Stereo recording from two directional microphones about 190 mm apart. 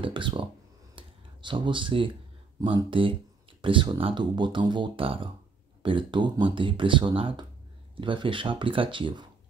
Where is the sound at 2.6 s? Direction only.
25° right (ahead or behind).